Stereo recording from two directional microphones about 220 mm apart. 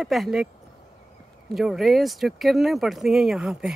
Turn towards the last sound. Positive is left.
turn(degrees=-5)  # may be behind; listen again after turning